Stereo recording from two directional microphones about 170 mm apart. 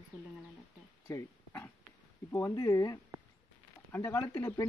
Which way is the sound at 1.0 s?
15° left (ahead or behind).